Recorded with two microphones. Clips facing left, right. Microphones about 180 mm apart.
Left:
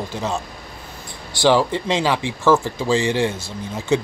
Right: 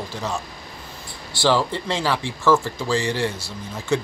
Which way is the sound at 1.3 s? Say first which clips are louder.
Left 4 dB; 15° left (ahead or behind).